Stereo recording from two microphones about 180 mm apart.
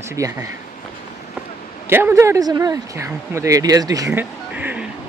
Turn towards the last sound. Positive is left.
turn(degrees=-5)  # may be behind; listen again after turning